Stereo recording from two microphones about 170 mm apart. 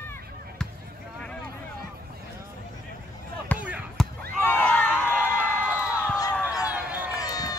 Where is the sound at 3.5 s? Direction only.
10° left (ahead or behind).